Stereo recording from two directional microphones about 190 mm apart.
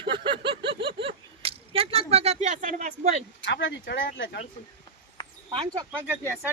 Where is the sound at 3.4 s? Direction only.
70° left (ahead or behind).